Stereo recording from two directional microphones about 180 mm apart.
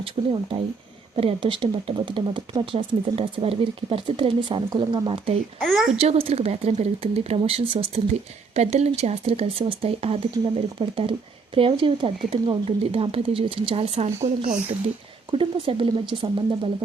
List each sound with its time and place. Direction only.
0.2 s speech: 25° right (ahead or behind)
5.5 s a woman's voice: centre (ahead or behind)
6.0 s speech: 35° right (ahead or behind)